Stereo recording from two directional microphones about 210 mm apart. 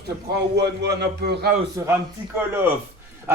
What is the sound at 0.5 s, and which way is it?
A man's voice, 50° right (ahead or behind).